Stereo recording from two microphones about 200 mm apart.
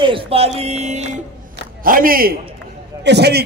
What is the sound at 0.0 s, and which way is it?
Speech, 25° right (ahead or behind).